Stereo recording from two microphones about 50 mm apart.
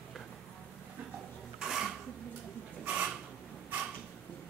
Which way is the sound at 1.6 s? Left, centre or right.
Centre.